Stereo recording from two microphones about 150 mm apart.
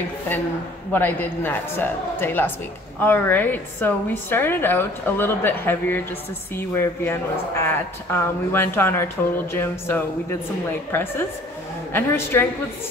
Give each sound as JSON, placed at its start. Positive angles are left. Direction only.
{"t": 0.9, "sound": "a woman's voice", "side_deg": 15}